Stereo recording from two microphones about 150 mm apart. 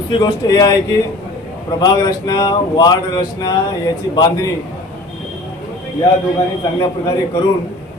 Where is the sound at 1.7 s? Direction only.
25° left (ahead or behind).